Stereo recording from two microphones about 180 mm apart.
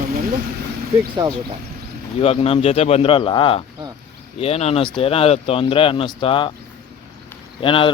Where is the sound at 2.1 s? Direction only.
35° left (ahead or behind).